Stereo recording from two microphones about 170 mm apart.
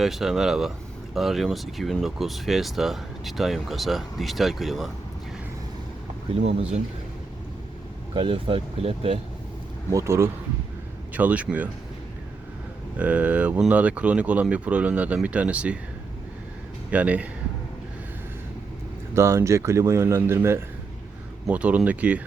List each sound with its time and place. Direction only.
0.0 s speech: centre (ahead or behind)
8.1 s speech: 30° right (ahead or behind)
9.9 s speech: 15° right (ahead or behind)
13.0 s speech: 10° right (ahead or behind)
16.9 s speech: 10° right (ahead or behind)
19.1 s speech: 15° right (ahead or behind)